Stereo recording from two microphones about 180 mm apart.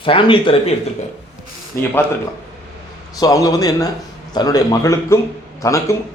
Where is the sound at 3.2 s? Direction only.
20° left (ahead or behind).